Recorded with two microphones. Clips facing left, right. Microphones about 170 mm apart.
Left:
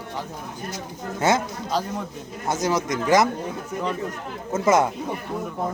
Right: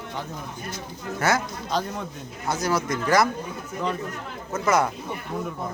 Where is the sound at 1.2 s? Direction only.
20° left (ahead or behind).